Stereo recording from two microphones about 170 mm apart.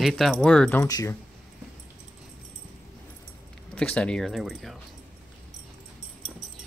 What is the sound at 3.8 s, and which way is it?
Speech, 5° left (ahead or behind).